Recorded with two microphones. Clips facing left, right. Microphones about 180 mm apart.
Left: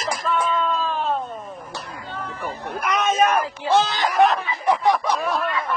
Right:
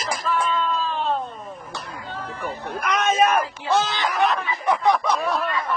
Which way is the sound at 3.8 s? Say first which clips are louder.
Left 3 dB; 40° left (ahead or behind).